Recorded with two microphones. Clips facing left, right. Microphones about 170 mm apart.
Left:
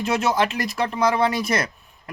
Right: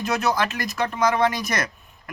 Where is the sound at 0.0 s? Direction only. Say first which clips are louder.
Left 2 dB; 25° left (ahead or behind).